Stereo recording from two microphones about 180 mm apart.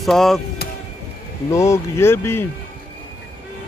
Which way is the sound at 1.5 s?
15° left (ahead or behind).